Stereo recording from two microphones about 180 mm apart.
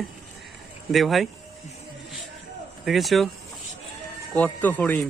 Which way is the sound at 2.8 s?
Centre (ahead or behind).